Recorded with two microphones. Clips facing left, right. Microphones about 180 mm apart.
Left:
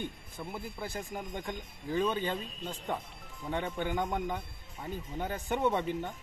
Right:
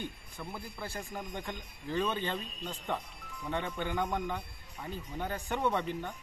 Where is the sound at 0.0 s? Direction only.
20° left (ahead or behind).